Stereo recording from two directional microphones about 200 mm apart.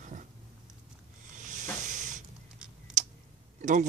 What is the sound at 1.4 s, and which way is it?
Hiss, 40° right (ahead or behind).